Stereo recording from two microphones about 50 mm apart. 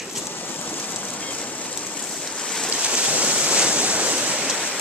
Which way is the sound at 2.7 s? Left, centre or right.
Right.